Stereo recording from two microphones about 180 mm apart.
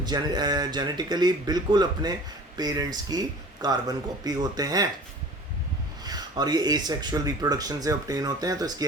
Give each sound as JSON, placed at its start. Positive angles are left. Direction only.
{"t": 0.0, "sound": "speech", "side_deg": -25}
{"t": 6.1, "sound": "speech", "side_deg": -20}